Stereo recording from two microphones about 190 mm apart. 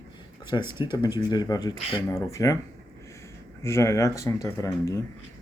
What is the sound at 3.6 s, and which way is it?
Speech, 15° left (ahead or behind).